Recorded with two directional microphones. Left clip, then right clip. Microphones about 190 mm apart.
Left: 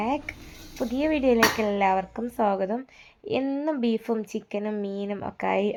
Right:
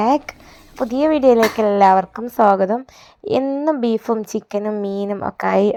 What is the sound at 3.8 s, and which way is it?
Speech, 35° right (ahead or behind).